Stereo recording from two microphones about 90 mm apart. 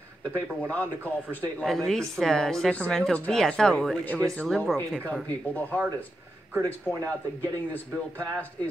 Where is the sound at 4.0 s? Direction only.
15° left (ahead or behind).